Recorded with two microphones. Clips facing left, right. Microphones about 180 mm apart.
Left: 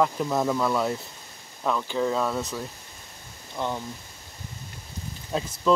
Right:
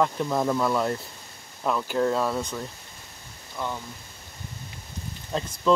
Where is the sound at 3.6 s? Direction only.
20° left (ahead or behind).